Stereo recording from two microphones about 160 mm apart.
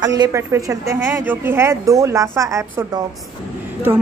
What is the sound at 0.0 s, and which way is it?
Speech, 25° right (ahead or behind).